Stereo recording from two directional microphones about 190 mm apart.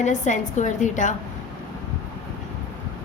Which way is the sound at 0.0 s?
40° left (ahead or behind).